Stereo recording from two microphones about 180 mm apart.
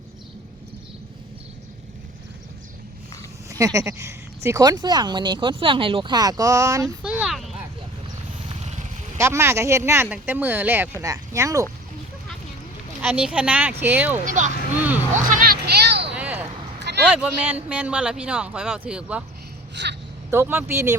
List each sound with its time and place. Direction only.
3.5 s speech: 20° right (ahead or behind)
7.0 s a sound: 5° right (ahead or behind)
8.4 s vehicle: 35° right (ahead or behind)
9.1 s speech: 15° right (ahead or behind)
13.0 s speech: 10° right (ahead or behind)
14.3 s speech: 45° right (ahead or behind)
15.1 s music: 50° right (ahead or behind); by 16.1 s 70° right (ahead or behind)
16.1 s a sound: 10° right (ahead or behind)
17.1 s speech: 10° right (ahead or behind)
19.7 s a woman's voice: 75° right (ahead or behind)
20.3 s speech: 15° right (ahead or behind)